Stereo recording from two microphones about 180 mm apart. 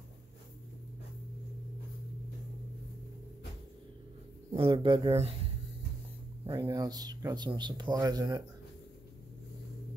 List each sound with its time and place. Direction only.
4.5 s speech: 30° right (ahead or behind)
6.4 s speech: 20° right (ahead or behind)